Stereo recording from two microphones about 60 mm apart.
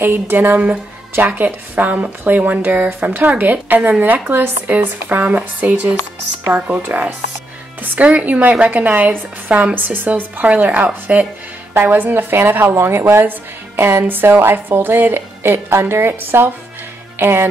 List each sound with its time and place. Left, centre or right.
0.0 s a woman's voice: right